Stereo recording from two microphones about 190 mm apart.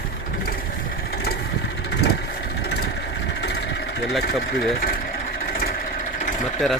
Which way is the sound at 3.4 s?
65° left (ahead or behind).